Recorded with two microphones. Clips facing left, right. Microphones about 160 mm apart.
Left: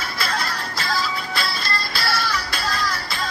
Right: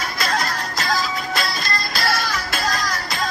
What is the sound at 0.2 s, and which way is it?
Music, 45° right (ahead or behind).